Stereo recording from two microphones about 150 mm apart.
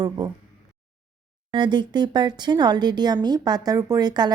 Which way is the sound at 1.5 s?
30° right (ahead or behind).